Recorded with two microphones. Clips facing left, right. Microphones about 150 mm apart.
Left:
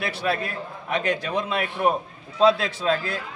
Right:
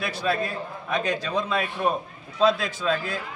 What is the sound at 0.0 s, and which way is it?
A man's voice, 65° left (ahead or behind).